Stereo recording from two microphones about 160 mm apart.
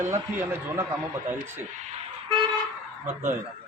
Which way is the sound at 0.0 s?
15° right (ahead or behind).